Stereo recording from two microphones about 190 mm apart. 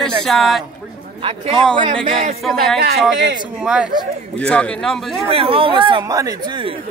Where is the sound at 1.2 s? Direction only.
30° right (ahead or behind).